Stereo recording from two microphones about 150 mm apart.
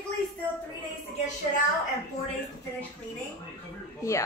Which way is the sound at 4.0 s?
20° left (ahead or behind).